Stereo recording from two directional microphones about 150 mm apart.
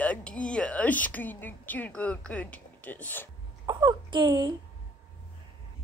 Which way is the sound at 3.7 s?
30° right (ahead or behind).